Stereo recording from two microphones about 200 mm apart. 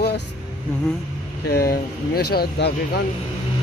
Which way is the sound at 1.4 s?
50° left (ahead or behind).